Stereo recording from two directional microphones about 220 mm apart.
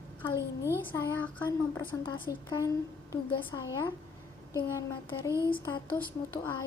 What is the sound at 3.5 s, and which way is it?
Speech, 15° left (ahead or behind).